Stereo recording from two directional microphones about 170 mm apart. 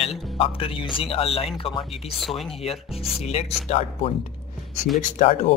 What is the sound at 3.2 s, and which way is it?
Speech, 40° left (ahead or behind).